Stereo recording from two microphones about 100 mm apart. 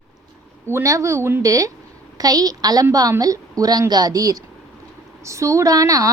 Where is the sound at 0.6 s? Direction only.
30° right (ahead or behind).